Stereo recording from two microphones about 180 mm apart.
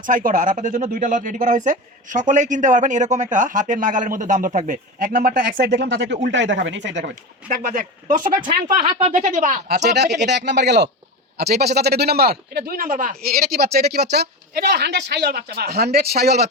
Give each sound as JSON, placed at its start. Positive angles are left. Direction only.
{"t": 0.0, "sound": "speech", "side_deg": -50}
{"t": 7.0, "sound": "speech", "side_deg": -50}
{"t": 8.3, "sound": "speech", "side_deg": -25}
{"t": 8.6, "sound": "speech", "side_deg": -50}
{"t": 10.2, "sound": "a man's voice", "side_deg": -70}